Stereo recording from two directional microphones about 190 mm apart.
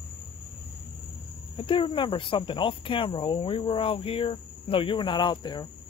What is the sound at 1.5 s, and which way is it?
Speech, 30° left (ahead or behind).